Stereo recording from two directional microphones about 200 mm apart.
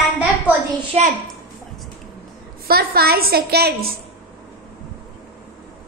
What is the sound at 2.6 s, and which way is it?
A woman's voice, 50° right (ahead or behind).